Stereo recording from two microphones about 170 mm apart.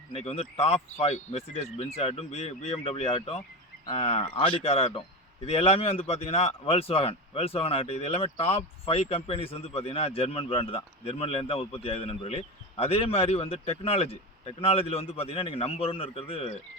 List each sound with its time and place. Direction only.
0.1 s speech: 35° left (ahead or behind)